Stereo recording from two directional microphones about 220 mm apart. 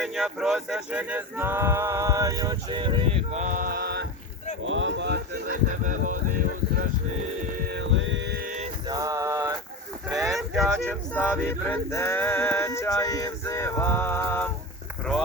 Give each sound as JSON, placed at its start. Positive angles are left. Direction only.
{"t": 0.0, "sound": "speech", "side_deg": 0}
{"t": 4.6, "sound": "speech", "side_deg": -60}
{"t": 5.8, "sound": "speech", "side_deg": -35}
{"t": 7.7, "sound": "a sound", "side_deg": -55}
{"t": 8.9, "sound": "male singing", "side_deg": -15}
{"t": 10.1, "sound": "a sound", "side_deg": -15}
{"t": 10.3, "sound": "vehicle", "side_deg": 0}
{"t": 11.3, "sound": "male singing", "side_deg": 10}